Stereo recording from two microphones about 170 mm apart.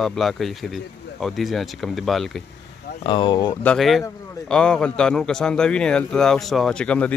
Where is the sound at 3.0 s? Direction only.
30° left (ahead or behind).